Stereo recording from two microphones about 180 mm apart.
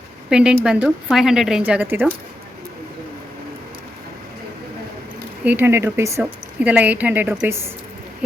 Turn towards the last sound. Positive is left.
turn(degrees=-10)  # may be behind; listen again after turning